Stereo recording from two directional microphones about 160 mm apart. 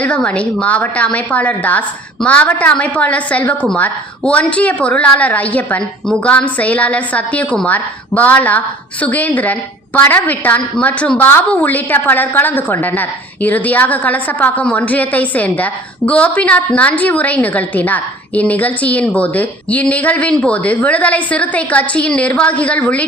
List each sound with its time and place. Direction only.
0.0 s a woman's voice: 10° left (ahead or behind)